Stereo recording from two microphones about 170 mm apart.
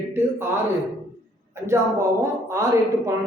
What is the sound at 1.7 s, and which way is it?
Speech, 15° right (ahead or behind).